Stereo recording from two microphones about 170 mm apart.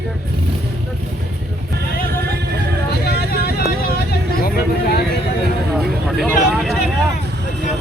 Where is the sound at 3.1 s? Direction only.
70° left (ahead or behind).